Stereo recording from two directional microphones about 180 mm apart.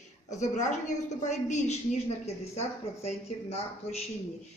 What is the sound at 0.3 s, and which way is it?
A woman's voice, 40° left (ahead or behind).